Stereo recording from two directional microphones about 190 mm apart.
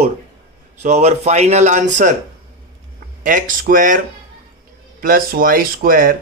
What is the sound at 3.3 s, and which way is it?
Speech, 45° right (ahead or behind).